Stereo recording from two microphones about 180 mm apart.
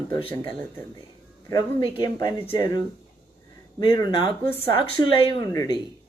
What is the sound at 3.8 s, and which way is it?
Speech, 25° left (ahead or behind).